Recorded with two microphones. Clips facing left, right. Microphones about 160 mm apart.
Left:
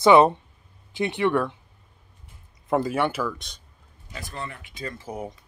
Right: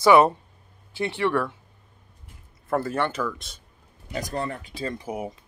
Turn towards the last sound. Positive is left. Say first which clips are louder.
# right 2 dB
turn(degrees=-10)  # may be behind; listen again after turning